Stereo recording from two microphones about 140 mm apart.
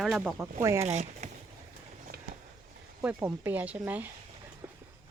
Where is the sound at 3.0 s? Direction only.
15° right (ahead or behind).